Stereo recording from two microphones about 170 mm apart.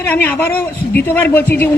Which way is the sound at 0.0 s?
10° left (ahead or behind).